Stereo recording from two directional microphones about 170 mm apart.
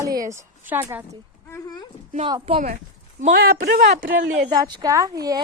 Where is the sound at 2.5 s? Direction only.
30° right (ahead or behind).